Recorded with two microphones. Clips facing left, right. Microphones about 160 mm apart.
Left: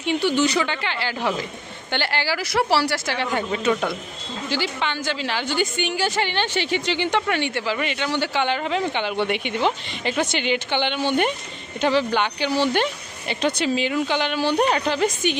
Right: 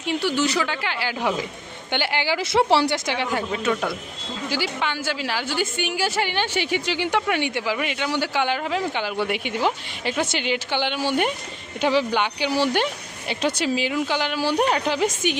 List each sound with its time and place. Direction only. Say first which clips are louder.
0.0 s a woman's voice: left 2 dB; centre (ahead or behind)